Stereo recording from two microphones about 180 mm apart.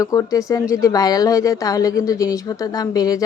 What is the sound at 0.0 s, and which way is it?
Speech, 20° left (ahead or behind).